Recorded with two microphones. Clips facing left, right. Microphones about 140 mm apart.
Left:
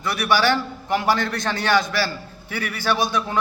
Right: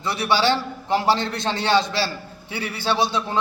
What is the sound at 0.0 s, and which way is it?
A man's voice, 25° right (ahead or behind).